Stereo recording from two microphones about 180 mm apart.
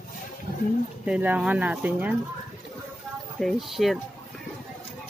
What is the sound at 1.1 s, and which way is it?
Speech, 10° right (ahead or behind).